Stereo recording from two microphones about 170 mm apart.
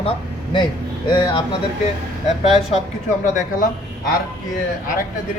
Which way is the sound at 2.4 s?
35° left (ahead or behind).